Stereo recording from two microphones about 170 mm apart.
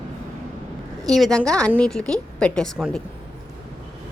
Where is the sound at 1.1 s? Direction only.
Centre (ahead or behind).